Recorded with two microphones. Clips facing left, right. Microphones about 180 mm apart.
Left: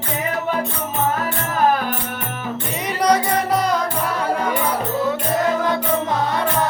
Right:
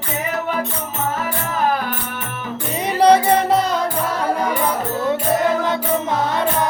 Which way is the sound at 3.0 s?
30° right (ahead or behind).